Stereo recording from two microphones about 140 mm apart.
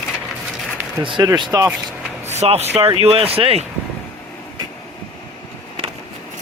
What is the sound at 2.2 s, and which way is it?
Speech, 50° right (ahead or behind).